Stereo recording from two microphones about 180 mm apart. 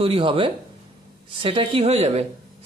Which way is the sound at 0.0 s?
30° right (ahead or behind).